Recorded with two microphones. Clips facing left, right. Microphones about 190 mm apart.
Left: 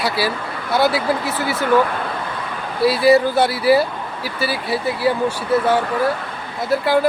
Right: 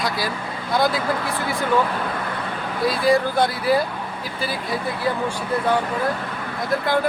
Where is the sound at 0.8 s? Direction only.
70° left (ahead or behind).